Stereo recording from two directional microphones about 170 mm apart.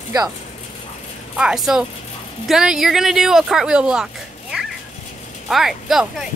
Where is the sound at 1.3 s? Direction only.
5° right (ahead or behind).